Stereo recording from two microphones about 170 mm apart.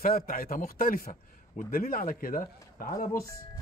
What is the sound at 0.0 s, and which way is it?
Speech, 60° left (ahead or behind).